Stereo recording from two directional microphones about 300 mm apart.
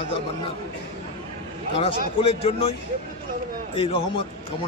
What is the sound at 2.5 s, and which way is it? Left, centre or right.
Speech, centre.